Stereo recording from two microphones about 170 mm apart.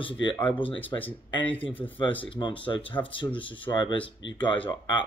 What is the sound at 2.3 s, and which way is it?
Speech, 30° left (ahead or behind).